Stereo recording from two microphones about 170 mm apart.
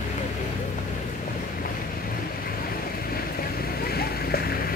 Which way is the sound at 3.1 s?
60° left (ahead or behind).